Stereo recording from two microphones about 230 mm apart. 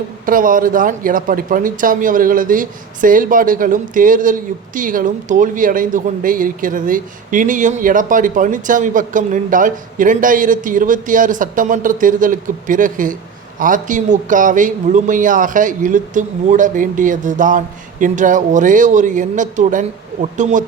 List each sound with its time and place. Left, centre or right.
0.3 s speech: right